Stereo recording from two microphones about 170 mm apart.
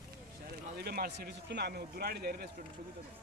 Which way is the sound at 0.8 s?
65° right (ahead or behind).